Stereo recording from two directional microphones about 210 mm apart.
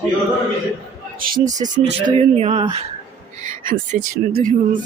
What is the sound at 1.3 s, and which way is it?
Speech, 35° right (ahead or behind).